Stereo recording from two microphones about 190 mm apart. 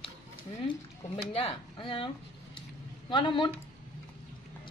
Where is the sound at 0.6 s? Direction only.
25° left (ahead or behind).